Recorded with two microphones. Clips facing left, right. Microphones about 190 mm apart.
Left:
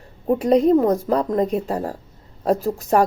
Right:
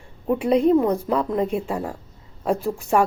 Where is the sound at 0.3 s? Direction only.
40° left (ahead or behind).